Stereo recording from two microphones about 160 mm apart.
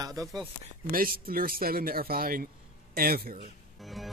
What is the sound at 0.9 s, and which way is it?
Speech, 65° right (ahead or behind).